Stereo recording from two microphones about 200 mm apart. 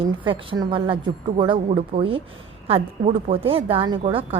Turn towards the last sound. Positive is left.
turn(degrees=-25)  # may be behind; listen again after turning